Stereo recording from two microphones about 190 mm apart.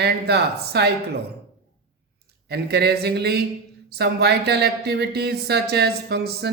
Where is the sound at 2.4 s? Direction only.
60° right (ahead or behind).